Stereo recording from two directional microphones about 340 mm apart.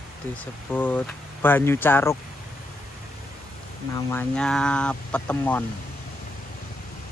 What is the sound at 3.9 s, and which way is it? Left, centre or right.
Speech, centre.